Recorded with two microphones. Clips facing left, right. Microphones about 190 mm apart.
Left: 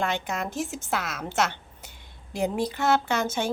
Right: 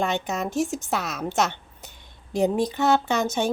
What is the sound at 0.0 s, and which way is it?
Speech, 20° right (ahead or behind).